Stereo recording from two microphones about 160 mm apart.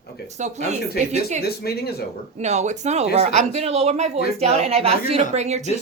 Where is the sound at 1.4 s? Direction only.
80° left.